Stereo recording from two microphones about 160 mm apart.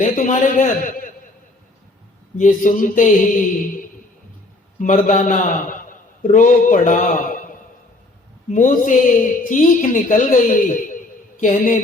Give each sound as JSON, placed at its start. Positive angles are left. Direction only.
{"t": 0.0, "sound": "a man's voice", "side_deg": 50}
{"t": 2.4, "sound": "speech", "side_deg": 55}
{"t": 4.8, "sound": "a man's voice", "side_deg": 50}
{"t": 8.5, "sound": "speech", "side_deg": 55}